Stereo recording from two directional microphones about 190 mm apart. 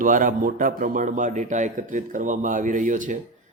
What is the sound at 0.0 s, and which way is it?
A man's voice, 45° right (ahead or behind).